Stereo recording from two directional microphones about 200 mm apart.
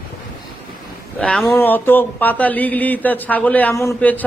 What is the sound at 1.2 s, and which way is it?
Speech, 5° left (ahead or behind).